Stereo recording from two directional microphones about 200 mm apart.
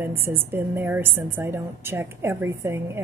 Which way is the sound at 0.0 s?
10° right (ahead or behind).